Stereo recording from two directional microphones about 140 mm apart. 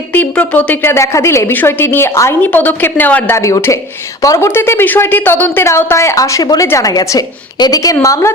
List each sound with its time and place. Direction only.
0.1 s a woman's voice: 10° left (ahead or behind)